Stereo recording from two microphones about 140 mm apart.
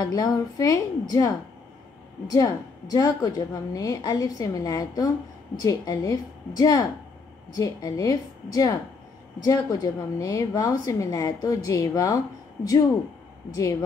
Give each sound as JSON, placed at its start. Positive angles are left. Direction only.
{"t": 0.0, "sound": "a woman's voice", "side_deg": 25}
{"t": 2.3, "sound": "a woman's voice", "side_deg": 25}